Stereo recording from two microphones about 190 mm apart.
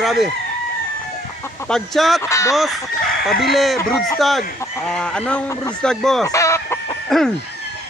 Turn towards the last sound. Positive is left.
turn(degrees=0)  # may be behind; listen again after turning